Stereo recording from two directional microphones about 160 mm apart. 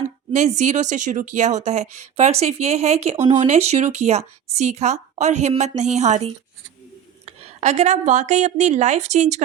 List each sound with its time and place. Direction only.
0.3 s a woman's voice: 45° right (ahead or behind)